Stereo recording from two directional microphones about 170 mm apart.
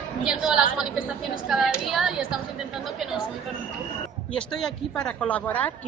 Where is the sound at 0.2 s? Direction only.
5° right (ahead or behind).